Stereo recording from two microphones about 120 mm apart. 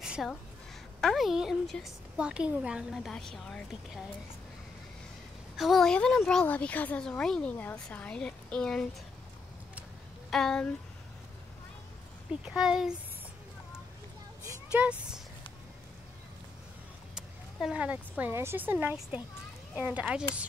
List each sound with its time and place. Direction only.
0.0 s a sound: 5° right (ahead or behind)
1.0 s a woman's voice: centre (ahead or behind)
5.6 s a woman's voice: centre (ahead or behind)
10.3 s a woman's voice: 5° left (ahead or behind)
12.3 s a woman's voice: 5° right (ahead or behind)
14.7 s speech: 10° right (ahead or behind)
17.1 s vehicle: 5° right (ahead or behind)
18.3 s a woman's voice: 20° right (ahead or behind)